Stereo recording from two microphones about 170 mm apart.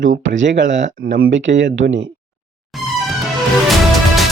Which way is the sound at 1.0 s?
65° right (ahead or behind).